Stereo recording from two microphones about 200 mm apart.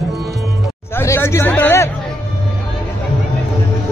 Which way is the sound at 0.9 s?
10° left (ahead or behind).